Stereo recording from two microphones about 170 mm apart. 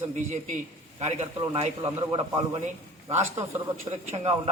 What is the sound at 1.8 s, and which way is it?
Speech, 30° right (ahead or behind).